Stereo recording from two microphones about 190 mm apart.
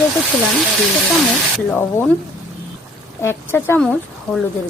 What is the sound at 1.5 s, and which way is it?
Speech, 10° left (ahead or behind).